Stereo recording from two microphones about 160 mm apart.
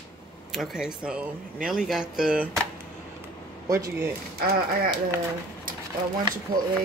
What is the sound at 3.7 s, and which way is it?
Speech, 20° right (ahead or behind).